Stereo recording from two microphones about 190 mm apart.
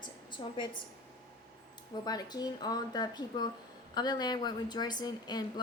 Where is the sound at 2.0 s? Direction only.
20° left (ahead or behind).